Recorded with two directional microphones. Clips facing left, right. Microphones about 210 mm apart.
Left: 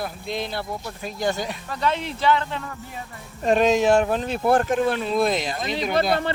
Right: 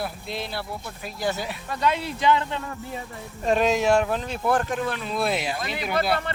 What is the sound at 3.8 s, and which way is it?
Speech, 30° left (ahead or behind).